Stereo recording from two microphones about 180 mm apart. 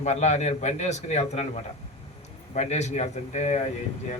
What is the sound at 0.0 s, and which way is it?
Speech, 40° left (ahead or behind).